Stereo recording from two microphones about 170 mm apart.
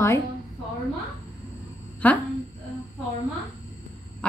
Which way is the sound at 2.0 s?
10° left (ahead or behind).